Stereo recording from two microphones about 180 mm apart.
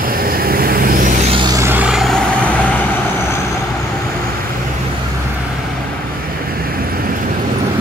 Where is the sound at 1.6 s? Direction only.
10° right (ahead or behind).